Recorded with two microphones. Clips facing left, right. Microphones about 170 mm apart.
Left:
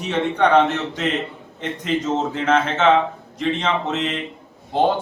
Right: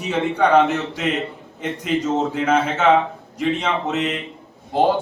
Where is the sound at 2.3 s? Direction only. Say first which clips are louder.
Even; 5° right (ahead or behind).